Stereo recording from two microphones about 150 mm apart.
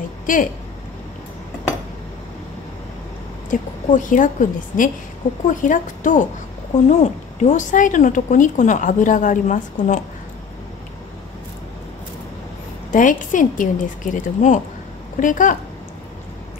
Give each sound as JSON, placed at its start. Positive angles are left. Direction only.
{"t": 0.3, "sound": "speech", "side_deg": 65}
{"t": 3.4, "sound": "speech", "side_deg": 60}
{"t": 12.9, "sound": "speech", "side_deg": 60}